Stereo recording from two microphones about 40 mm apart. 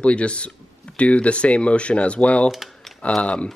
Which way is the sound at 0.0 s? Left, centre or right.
Left.